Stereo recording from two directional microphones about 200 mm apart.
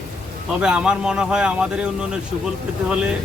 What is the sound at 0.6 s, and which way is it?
Speech, 5° right (ahead or behind).